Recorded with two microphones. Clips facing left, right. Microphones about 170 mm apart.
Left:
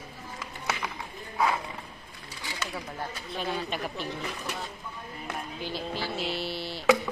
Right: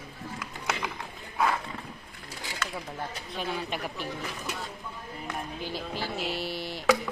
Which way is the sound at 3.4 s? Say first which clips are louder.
Left 1 dB; 15° right (ahead or behind).